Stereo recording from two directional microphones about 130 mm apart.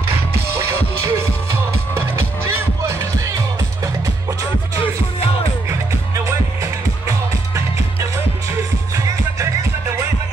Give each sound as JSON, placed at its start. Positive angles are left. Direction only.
{"t": 0.6, "sound": "music", "side_deg": -20}
{"t": 6.2, "sound": "music", "side_deg": -20}